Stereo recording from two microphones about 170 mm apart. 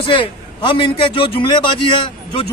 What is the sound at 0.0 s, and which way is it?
A man's voice, 30° left (ahead or behind).